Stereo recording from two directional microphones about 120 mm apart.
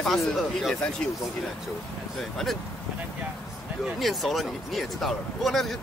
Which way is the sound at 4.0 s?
Centre (ahead or behind).